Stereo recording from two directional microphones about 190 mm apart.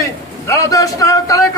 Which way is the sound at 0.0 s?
15° left (ahead or behind).